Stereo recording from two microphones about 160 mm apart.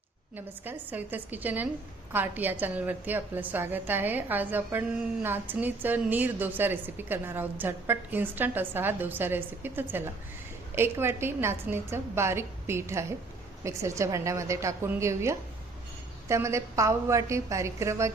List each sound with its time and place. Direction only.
0.3 s a woman's voice: 10° right (ahead or behind)